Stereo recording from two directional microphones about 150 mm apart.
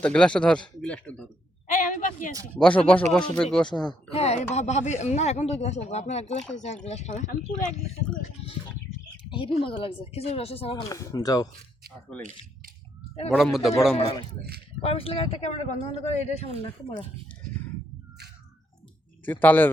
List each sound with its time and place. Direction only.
0.0 s speech: 5° left (ahead or behind)
1.6 s a woman's voice: 55° left (ahead or behind)
2.6 s a man's voice: 5° left (ahead or behind)
4.1 s speech: 45° left (ahead or behind)
9.3 s speech: 35° left (ahead or behind)
10.8 s speech: 20° left (ahead or behind)
13.3 s a man's voice: centre (ahead or behind)
14.8 s speech: 40° left (ahead or behind)
19.2 s speech: 10° left (ahead or behind)